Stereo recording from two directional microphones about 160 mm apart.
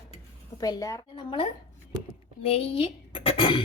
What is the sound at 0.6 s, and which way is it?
A woman's voice, 20° left (ahead or behind).